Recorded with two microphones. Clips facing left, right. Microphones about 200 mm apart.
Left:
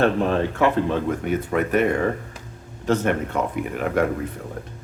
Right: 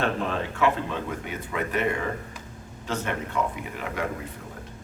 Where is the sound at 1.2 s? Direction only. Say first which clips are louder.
Left 9 dB; 50° left (ahead or behind).